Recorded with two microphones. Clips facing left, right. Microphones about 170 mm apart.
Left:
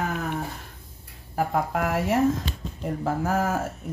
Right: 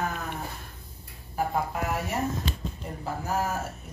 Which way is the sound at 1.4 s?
90° left.